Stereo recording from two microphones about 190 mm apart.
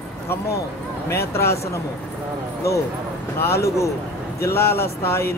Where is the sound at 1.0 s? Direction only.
15° left (ahead or behind).